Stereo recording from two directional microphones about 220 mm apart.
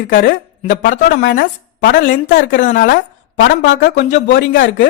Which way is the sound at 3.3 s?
50° left (ahead or behind).